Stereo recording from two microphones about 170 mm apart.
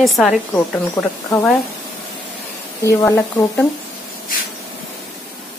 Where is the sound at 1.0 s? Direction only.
15° left (ahead or behind).